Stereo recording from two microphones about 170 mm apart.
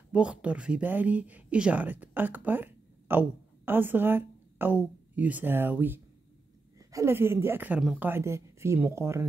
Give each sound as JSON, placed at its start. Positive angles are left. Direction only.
{"t": 0.1, "sound": "speech", "side_deg": -5}